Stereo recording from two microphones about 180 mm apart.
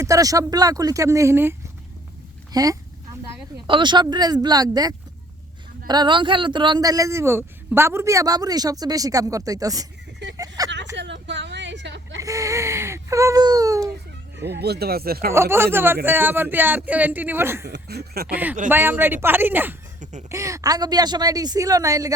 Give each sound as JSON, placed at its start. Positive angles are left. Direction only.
{"t": 0.0, "sound": "a man's voice", "side_deg": -20}
{"t": 10.6, "sound": "vehicle", "side_deg": -20}
{"t": 10.9, "sound": "vehicle", "side_deg": -80}
{"t": 12.2, "sound": "speech", "side_deg": -15}
{"t": 14.3, "sound": "speech", "side_deg": -70}
{"t": 15.3, "sound": "speech", "side_deg": -15}
{"t": 17.7, "sound": "speech", "side_deg": -65}
{"t": 18.7, "sound": "a man's voice", "side_deg": -10}